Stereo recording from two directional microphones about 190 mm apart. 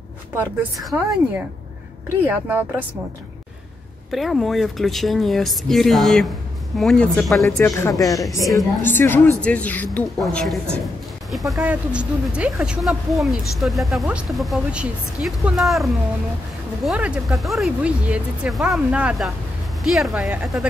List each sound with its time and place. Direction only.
0.6 s speech: 5° right (ahead or behind)
4.1 s speech: centre (ahead or behind)
7.4 s a woman's voice: 15° left (ahead or behind); by 20.6 s 5° right (ahead or behind)